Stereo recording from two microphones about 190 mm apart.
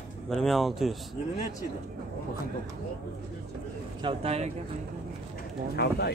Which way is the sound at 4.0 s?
30° right (ahead or behind).